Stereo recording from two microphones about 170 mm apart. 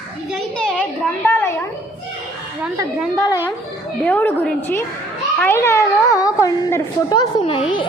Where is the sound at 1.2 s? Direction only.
15° left (ahead or behind).